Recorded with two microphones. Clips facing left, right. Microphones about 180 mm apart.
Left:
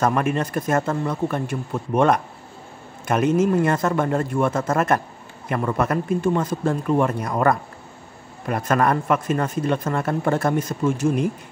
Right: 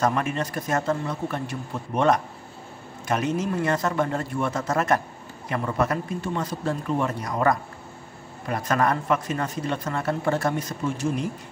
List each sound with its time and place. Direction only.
0.0 s a man's voice: 50° left (ahead or behind)